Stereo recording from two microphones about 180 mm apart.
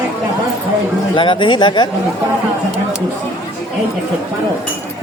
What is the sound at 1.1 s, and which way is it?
Speech, 25° left (ahead or behind).